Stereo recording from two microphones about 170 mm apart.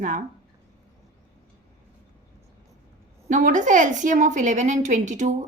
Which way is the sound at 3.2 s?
50° right (ahead or behind).